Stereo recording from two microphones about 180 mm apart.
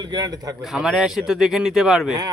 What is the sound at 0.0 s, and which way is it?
Speech, 25° right (ahead or behind).